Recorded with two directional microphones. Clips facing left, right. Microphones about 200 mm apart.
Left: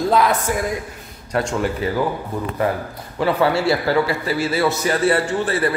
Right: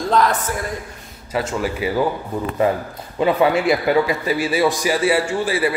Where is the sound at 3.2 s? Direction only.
15° right (ahead or behind).